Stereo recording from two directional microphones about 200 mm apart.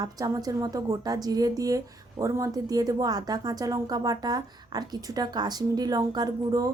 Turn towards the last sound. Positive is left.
turn(degrees=-15)  # may be behind; listen again after turning